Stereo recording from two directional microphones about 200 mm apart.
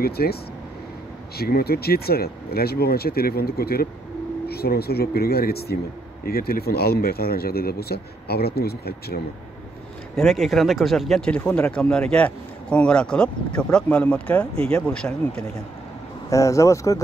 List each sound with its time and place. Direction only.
0.0 s speech: 50° left (ahead or behind)
10.1 s speech: centre (ahead or behind)
16.3 s speech: 15° left (ahead or behind)